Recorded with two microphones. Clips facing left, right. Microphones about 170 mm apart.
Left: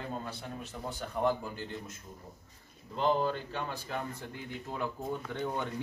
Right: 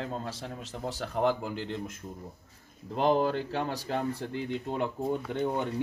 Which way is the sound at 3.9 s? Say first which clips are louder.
Right 7 dB; 35° right (ahead or behind).